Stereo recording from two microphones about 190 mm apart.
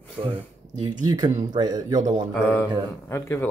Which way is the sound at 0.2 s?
30° right (ahead or behind).